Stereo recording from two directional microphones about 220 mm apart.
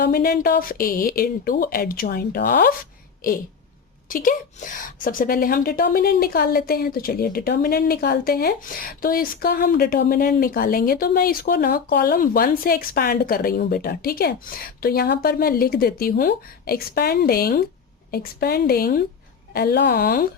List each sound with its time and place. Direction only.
0.0 s a woman's voice: 45° left (ahead or behind)
4.1 s a woman's voice: 35° left (ahead or behind)